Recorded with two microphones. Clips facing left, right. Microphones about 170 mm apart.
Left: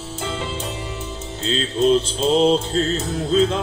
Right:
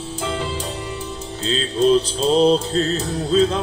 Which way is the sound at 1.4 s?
35° right (ahead or behind).